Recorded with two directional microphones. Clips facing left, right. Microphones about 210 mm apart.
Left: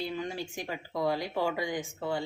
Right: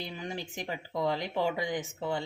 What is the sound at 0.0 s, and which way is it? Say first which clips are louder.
Speech: left 3 dB; 20° right (ahead or behind).